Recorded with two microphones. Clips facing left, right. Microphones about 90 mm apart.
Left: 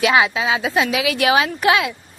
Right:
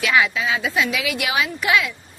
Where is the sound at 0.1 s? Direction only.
35° left (ahead or behind).